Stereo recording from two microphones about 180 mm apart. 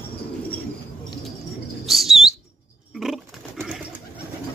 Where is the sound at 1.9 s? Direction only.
Centre (ahead or behind).